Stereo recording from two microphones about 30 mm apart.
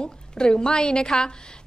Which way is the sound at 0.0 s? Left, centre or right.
Left.